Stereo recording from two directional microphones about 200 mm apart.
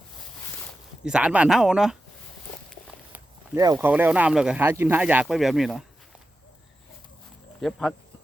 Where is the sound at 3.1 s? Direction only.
15° right (ahead or behind); by 5.8 s centre (ahead or behind).